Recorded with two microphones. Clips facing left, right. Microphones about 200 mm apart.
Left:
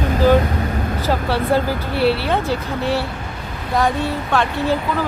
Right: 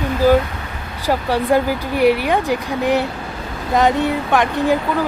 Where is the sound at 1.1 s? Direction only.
15° right (ahead or behind).